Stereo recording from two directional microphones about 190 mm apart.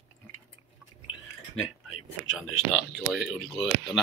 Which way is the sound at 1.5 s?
90° left.